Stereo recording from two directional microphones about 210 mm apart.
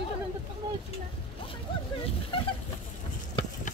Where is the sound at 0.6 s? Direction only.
20° right (ahead or behind).